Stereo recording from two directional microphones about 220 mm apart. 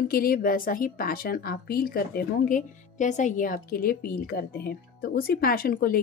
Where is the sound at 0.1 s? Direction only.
40° left (ahead or behind).